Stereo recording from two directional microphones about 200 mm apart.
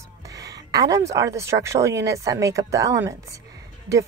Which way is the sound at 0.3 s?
15° right (ahead or behind).